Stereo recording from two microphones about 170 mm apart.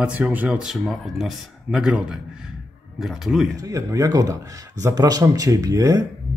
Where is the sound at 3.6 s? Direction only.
20° right (ahead or behind).